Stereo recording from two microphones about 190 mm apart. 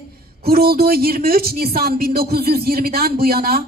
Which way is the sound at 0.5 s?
55° right (ahead or behind).